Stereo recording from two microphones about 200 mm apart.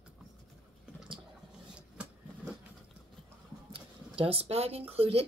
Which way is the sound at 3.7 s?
30° right (ahead or behind).